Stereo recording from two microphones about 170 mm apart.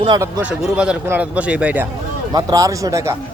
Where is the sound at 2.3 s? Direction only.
25° right (ahead or behind).